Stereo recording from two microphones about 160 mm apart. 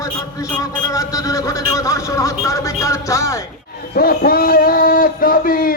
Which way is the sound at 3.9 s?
70° left (ahead or behind).